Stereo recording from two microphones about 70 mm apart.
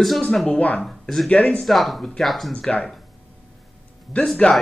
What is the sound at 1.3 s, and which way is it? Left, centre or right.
Speech, centre.